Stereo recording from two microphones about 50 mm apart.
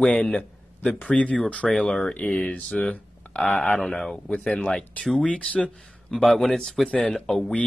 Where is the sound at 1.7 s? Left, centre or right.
Centre.